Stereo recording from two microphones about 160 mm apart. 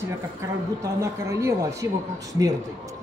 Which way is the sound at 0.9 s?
20° right (ahead or behind).